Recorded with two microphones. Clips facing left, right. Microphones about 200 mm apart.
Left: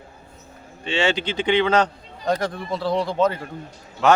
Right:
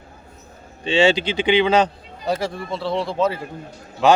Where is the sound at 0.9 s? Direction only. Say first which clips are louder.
Right 5 dB; 15° right (ahead or behind).